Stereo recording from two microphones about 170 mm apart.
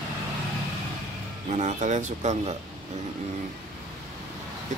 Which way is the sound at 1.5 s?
45° right (ahead or behind).